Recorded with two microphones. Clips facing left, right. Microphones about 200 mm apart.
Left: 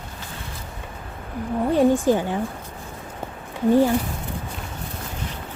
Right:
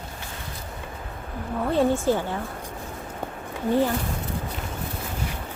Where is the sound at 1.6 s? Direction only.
15° left (ahead or behind).